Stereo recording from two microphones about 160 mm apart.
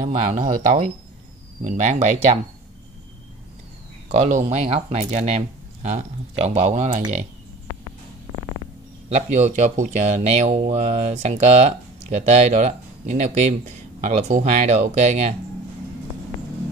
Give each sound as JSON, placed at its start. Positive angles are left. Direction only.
{"t": 0.0, "sound": "speech", "side_deg": -50}
{"t": 4.1, "sound": "speech", "side_deg": -40}
{"t": 9.1, "sound": "speech", "side_deg": -45}